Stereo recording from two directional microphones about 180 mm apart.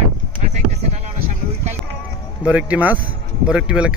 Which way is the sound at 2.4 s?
10° right (ahead or behind).